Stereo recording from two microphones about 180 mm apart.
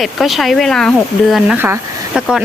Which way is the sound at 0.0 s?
Centre (ahead or behind).